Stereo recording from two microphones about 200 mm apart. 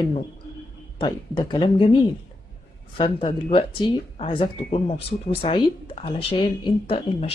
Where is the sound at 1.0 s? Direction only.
20° left (ahead or behind).